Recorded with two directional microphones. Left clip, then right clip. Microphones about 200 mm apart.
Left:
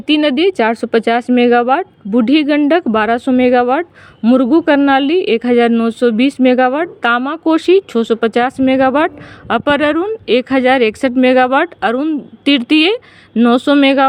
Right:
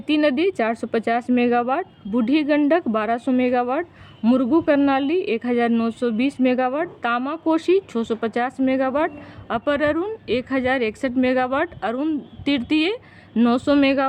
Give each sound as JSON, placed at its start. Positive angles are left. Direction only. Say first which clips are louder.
{"t": 0.0, "sound": "a woman's voice", "louder": "left 7 dB", "side_deg": 30}
{"t": 13.3, "sound": "speech", "louder": "left 8 dB", "side_deg": 25}
{"t": 13.6, "sound": "a woman's voice", "louder": "left 8 dB", "side_deg": 35}